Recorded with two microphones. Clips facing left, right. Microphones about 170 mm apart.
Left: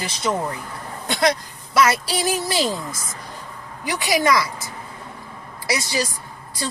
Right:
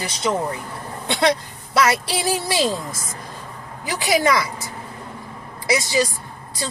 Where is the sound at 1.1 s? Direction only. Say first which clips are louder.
Right 1 dB; 25° right (ahead or behind).